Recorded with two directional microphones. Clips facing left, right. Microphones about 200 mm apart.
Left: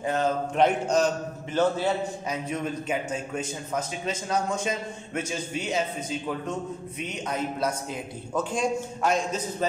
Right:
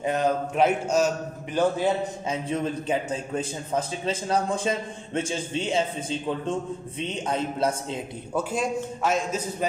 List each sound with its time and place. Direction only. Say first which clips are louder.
0.0 s a man's voice: right 2 dB; 15° right (ahead or behind)
0.6 s a man's voice: even; 5° right (ahead or behind)
2.2 s a man's voice: right 3 dB; 30° right (ahead or behind)
8.4 s a man's voice: even; 5° right (ahead or behind)